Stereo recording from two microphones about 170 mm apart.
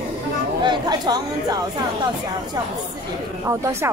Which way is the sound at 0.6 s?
25° right (ahead or behind).